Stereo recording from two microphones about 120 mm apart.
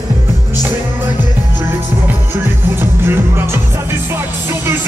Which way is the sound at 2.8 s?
20° right (ahead or behind).